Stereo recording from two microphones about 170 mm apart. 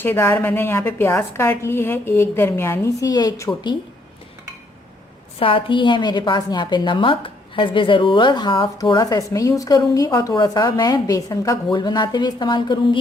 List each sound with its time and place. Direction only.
0.0 s a woman's voice: 15° left (ahead or behind)
5.4 s a woman's voice: 30° left (ahead or behind)